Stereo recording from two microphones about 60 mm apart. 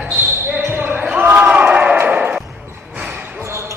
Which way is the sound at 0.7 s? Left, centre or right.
Right.